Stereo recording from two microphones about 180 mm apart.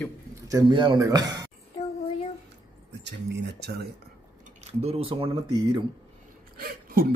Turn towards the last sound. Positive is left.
turn(degrees=-55)  # may be behind; listen again after turning